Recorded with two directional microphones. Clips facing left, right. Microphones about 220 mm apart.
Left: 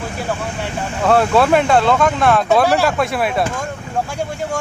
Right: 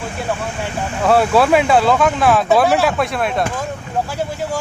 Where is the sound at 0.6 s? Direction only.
Centre (ahead or behind).